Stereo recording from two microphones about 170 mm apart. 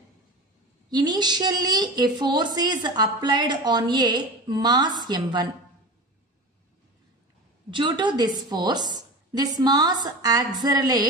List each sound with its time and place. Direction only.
0.8 s a woman's voice: 25° right (ahead or behind)
7.7 s a woman's voice: 30° right (ahead or behind)